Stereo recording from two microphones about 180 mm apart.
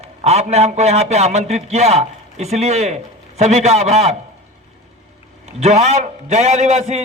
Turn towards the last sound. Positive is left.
turn(degrees=-40)  # may be behind; listen again after turning